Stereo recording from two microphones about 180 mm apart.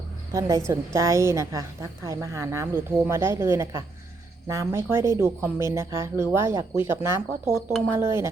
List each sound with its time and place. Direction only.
0.3 s a woman's voice: 20° right (ahead or behind)